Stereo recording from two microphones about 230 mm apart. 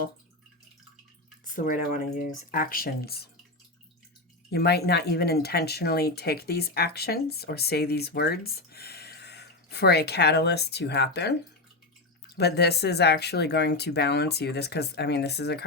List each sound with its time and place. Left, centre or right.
1.5 s speech: left
4.5 s speech: left
12.4 s speech: left